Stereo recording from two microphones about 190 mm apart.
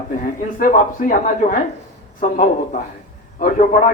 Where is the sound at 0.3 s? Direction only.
45° left (ahead or behind).